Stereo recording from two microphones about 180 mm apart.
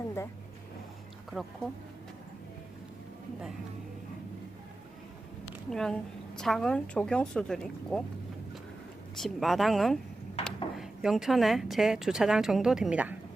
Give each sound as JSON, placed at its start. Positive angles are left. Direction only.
{"t": 1.3, "sound": "a woman's voice", "side_deg": 0}
{"t": 5.7, "sound": "a woman's voice", "side_deg": 5}
{"t": 9.1, "sound": "a woman's voice", "side_deg": 0}
{"t": 10.4, "sound": "a sound", "side_deg": 35}
{"t": 10.8, "sound": "a woman's voice", "side_deg": 0}